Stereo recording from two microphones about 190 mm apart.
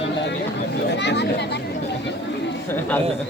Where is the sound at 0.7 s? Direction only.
60° left (ahead or behind).